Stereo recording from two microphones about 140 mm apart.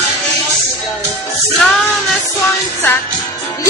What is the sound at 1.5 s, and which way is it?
Music, centre (ahead or behind).